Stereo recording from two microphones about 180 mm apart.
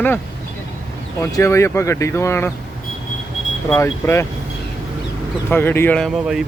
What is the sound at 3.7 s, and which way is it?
Speech, 15° left (ahead or behind).